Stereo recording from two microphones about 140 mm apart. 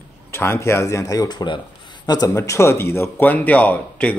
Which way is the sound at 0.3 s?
15° left (ahead or behind).